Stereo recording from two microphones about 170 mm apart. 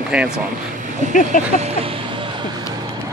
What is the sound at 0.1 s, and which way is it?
Speech, 5° right (ahead or behind).